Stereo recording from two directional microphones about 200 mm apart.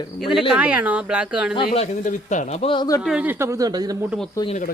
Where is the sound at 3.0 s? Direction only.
5° right (ahead or behind).